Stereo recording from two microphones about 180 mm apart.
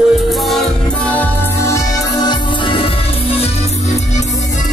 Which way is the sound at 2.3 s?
25° left (ahead or behind).